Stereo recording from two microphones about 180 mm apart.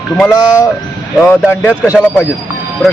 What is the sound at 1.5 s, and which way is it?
Speech, 15° left (ahead or behind).